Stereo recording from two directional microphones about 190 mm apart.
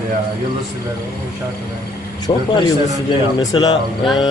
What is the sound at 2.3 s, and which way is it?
Music, 25° left (ahead or behind).